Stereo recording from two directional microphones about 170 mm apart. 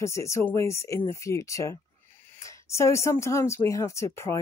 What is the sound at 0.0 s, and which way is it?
A woman's voice, 15° left (ahead or behind).